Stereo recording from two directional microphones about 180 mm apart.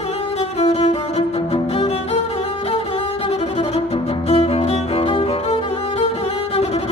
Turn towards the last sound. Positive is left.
turn(degrees=35)  # may be behind; listen again after turning